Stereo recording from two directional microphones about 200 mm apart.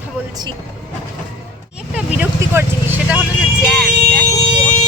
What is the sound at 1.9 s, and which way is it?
Speech, 10° right (ahead or behind).